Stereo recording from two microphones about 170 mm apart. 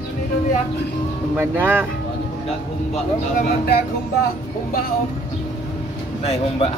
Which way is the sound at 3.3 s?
65° left (ahead or behind).